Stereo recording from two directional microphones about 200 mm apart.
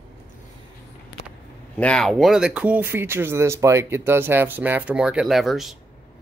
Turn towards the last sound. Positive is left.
turn(degrees=0)  # may be behind; listen again after turning